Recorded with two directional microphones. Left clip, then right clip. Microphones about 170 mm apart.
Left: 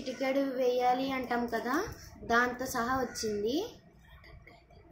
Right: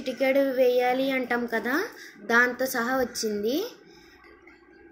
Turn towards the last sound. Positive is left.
turn(degrees=-15)  # may be behind; listen again after turning